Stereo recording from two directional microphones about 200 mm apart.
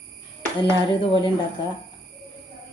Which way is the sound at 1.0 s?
25° left (ahead or behind).